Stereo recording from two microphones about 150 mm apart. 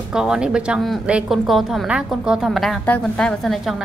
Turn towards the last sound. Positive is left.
turn(degrees=0)  # may be behind; listen again after turning